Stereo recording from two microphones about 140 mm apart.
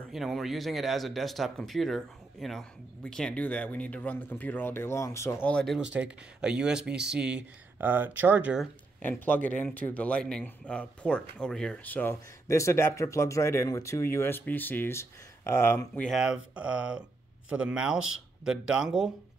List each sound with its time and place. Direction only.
0.1 s speech: centre (ahead or behind); by 5.5 s 20° left (ahead or behind)
5.5 s speech: 5° left (ahead or behind)
5.8 s speech: 5° right (ahead or behind)
9.0 s speech: 15° left (ahead or behind)
15.9 s speech: 5° left (ahead or behind)
16.2 s speech: 5° right (ahead or behind)